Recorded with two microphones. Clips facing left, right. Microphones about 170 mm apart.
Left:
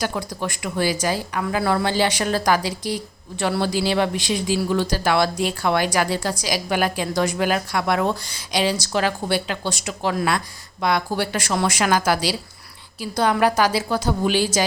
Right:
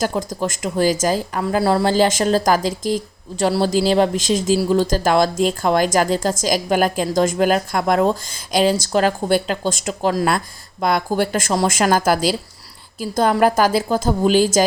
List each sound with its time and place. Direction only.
0.2 s speech: 45° right (ahead or behind)